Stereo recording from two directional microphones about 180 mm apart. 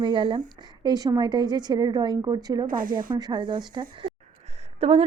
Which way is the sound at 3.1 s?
25° right (ahead or behind).